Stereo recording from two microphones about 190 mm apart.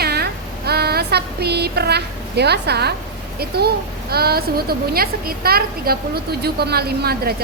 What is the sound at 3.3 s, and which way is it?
A woman's voice, 55° right (ahead or behind).